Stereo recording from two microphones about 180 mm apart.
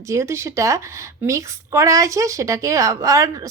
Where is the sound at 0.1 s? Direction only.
15° right (ahead or behind).